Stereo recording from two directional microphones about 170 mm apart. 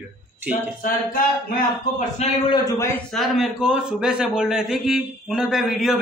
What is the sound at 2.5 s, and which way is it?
Speech, 20° left (ahead or behind).